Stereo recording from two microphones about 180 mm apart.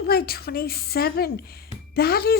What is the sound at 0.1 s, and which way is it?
Speech, 60° left (ahead or behind).